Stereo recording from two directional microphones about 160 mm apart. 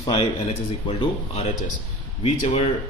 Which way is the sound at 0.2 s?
45° left (ahead or behind).